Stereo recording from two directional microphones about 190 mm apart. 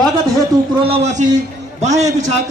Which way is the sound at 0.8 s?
40° right (ahead or behind).